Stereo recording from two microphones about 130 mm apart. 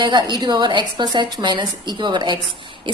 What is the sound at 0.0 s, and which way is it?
A woman's voice, 35° right (ahead or behind).